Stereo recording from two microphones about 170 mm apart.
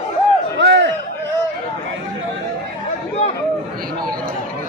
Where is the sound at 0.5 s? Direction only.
90° right.